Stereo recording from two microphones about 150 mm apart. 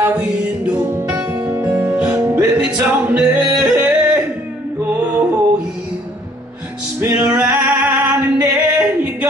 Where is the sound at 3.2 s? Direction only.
10° right (ahead or behind).